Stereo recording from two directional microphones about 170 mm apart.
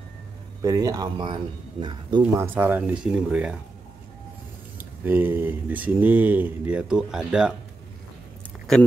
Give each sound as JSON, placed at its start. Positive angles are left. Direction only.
{"t": 0.6, "sound": "speech", "side_deg": -20}
{"t": 2.2, "sound": "speech", "side_deg": -10}
{"t": 4.7, "sound": "speech", "side_deg": -10}